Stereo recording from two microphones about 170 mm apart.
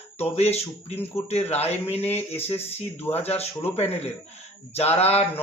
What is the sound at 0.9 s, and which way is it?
Speech, 10° left (ahead or behind).